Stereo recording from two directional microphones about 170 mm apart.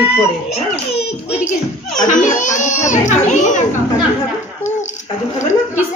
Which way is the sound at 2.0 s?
45° left (ahead or behind).